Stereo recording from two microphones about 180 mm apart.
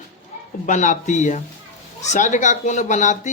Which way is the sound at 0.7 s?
45° left (ahead or behind).